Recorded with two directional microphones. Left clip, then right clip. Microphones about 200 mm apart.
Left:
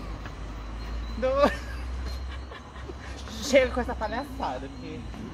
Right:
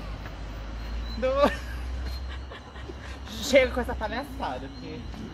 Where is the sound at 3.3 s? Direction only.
10° right (ahead or behind).